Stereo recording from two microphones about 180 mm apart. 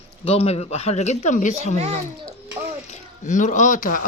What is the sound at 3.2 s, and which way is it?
Speech, 45° left (ahead or behind).